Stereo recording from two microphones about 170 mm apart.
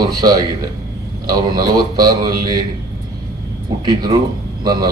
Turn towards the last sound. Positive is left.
turn(degrees=-25)  # may be behind; listen again after turning